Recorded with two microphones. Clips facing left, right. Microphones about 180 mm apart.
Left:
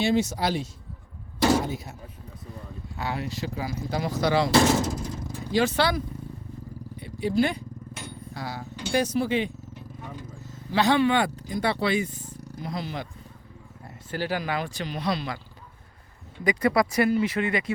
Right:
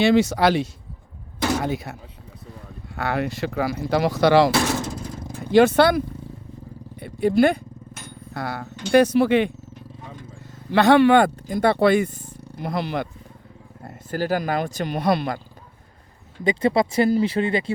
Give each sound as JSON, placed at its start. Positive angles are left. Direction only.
{"t": 0.0, "sound": "speech", "side_deg": -85}
{"t": 5.4, "sound": "speech", "side_deg": -60}
{"t": 7.0, "sound": "speech", "side_deg": -55}
{"t": 10.7, "sound": "speech", "side_deg": -60}
{"t": 13.8, "sound": "speech", "side_deg": -45}
{"t": 16.4, "sound": "speech", "side_deg": -25}